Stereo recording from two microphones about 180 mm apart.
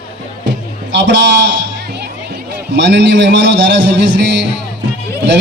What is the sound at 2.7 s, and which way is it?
A man's voice, 80° right.